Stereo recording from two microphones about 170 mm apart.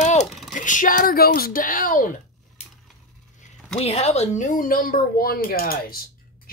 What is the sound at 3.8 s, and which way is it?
A woman's voice, 40° left (ahead or behind).